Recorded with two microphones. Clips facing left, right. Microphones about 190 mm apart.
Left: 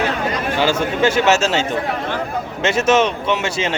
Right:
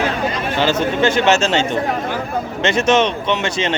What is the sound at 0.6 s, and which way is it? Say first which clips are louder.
Speech: right 1 dB; 10° left (ahead or behind).